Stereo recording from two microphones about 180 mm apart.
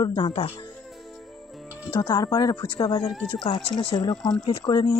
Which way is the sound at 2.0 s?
20° left (ahead or behind).